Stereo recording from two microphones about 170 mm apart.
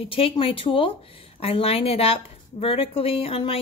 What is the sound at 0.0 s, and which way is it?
Speech, 35° left (ahead or behind).